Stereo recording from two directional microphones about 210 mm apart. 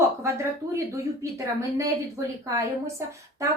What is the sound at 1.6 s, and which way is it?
A woman's voice, 15° right (ahead or behind).